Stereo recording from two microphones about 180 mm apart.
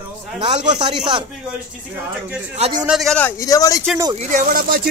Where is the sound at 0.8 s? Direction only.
25° right (ahead or behind).